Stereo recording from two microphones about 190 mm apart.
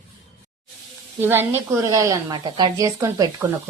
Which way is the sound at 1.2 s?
10° right (ahead or behind).